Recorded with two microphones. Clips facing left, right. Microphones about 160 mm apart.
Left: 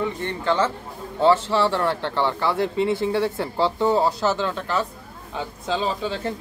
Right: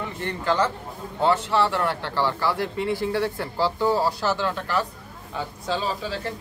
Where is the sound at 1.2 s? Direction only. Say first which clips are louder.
Left 3 dB; 25° left (ahead or behind).